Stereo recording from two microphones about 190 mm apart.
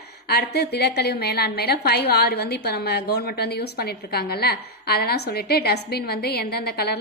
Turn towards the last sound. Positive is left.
turn(degrees=55)  # may be behind; listen again after turning